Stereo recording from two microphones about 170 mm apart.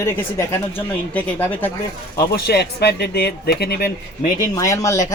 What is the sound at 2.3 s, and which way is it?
Speech, 75° left (ahead or behind).